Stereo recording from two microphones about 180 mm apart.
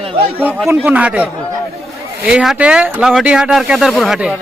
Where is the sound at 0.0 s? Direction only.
30° right (ahead or behind).